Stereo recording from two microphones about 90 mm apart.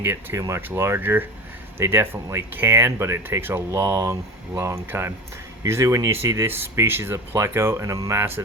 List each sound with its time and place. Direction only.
0.0 s speech: 25° right (ahead or behind)
3.7 s speech: 40° right (ahead or behind)